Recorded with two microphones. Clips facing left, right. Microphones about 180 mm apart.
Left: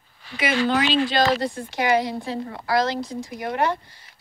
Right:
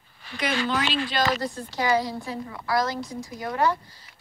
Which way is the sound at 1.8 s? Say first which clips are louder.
Left 3 dB; 65° left (ahead or behind).